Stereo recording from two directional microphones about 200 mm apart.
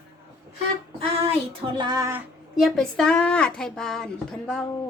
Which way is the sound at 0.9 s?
30° right (ahead or behind).